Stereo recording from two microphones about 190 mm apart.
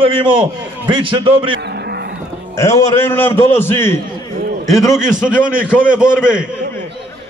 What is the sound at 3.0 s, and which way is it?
A man's voice, 10° left (ahead or behind).